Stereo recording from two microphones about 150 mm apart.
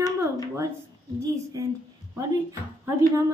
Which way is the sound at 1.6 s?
25° right (ahead or behind).